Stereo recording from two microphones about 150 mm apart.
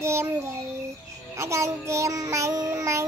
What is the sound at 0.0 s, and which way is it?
Child singing, 20° right (ahead or behind).